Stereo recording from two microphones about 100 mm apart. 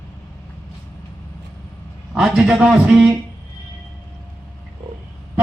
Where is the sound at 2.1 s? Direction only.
5° right (ahead or behind).